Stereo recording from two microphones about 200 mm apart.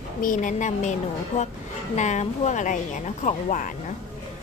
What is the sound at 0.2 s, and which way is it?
Speech, 40° left (ahead or behind).